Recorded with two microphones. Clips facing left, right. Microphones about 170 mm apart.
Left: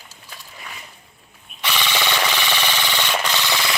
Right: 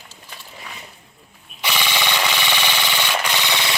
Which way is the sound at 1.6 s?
10° right (ahead or behind).